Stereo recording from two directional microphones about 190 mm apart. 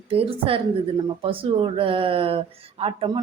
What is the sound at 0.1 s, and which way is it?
A woman's voice, 30° right (ahead or behind).